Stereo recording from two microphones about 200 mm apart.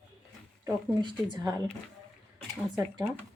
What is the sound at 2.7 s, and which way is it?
Speech, 15° right (ahead or behind).